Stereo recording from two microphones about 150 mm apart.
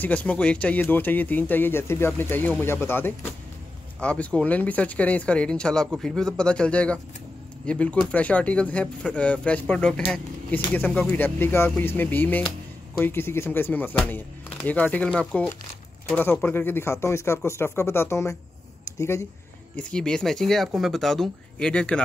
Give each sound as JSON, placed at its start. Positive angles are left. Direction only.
{"t": 0.0, "sound": "speech", "side_deg": 10}
{"t": 19.7, "sound": "speech", "side_deg": 5}